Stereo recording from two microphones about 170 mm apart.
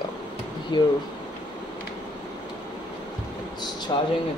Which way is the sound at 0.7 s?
25° left (ahead or behind).